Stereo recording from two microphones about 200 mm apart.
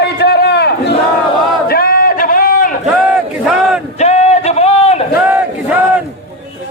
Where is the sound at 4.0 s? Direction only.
35° left (ahead or behind).